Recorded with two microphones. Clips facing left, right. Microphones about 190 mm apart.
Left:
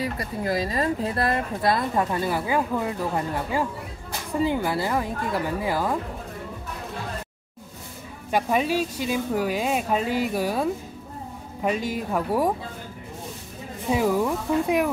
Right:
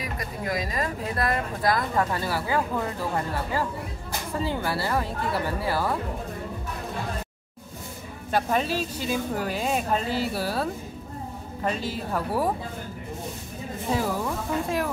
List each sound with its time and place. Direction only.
0.0 s speech: 30° left (ahead or behind)
8.3 s speech: 10° left (ahead or behind)
13.9 s speech: 15° left (ahead or behind)